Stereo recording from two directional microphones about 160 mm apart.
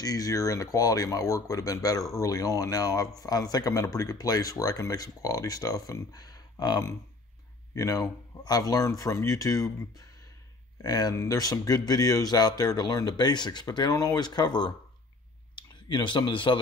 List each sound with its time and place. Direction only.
0.0 s speech: 25° left (ahead or behind)